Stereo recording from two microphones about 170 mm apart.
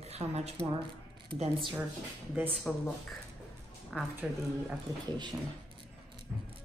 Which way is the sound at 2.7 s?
5° left (ahead or behind).